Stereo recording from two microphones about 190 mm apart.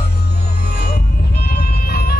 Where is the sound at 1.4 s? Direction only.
55° left (ahead or behind).